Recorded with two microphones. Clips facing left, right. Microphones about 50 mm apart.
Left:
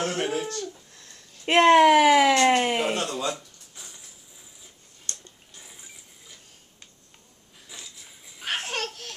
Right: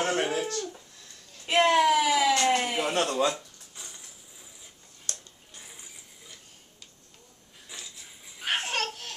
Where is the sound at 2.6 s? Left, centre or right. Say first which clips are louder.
Left 5 dB; left.